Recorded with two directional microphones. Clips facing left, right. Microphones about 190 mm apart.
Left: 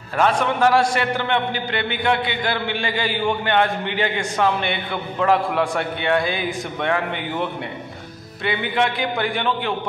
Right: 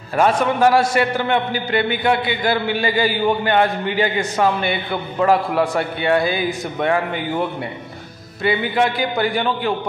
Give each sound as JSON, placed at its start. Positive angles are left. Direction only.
{"t": 0.2, "sound": "a man's voice", "side_deg": -10}
{"t": 3.0, "sound": "a man's voice", "side_deg": -40}
{"t": 4.0, "sound": "a man's voice", "side_deg": -5}
{"t": 8.5, "sound": "a man's voice", "side_deg": -5}